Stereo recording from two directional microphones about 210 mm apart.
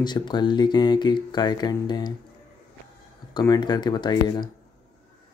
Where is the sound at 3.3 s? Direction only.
20° left (ahead or behind).